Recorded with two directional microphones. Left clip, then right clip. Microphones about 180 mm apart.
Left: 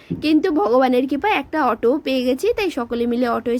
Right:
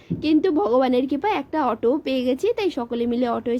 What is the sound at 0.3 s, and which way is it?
Speech, 25° left (ahead or behind).